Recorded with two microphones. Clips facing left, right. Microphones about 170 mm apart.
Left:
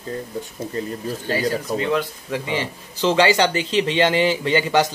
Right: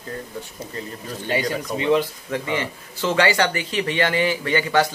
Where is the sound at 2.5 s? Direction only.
20° left (ahead or behind).